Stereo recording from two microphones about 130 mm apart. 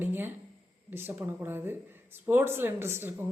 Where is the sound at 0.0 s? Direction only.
15° right (ahead or behind).